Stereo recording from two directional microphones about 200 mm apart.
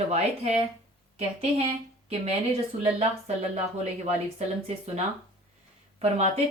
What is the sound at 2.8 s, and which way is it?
A woman's voice, 30° right (ahead or behind).